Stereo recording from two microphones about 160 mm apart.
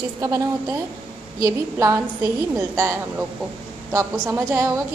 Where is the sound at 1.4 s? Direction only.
20° right (ahead or behind).